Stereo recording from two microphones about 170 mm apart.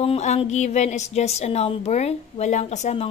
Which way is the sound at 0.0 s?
40° left (ahead or behind).